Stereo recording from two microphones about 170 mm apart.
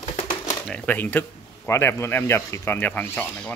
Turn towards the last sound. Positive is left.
turn(degrees=10)  # may be behind; listen again after turning